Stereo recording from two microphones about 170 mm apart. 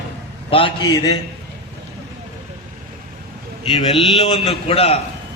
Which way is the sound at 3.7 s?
30° left (ahead or behind).